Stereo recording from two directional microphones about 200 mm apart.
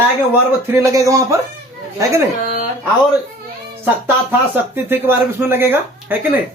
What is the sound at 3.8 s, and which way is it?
Speech, 10° right (ahead or behind).